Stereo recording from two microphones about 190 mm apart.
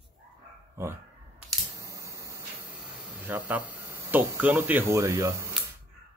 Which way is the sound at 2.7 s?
5° right (ahead or behind).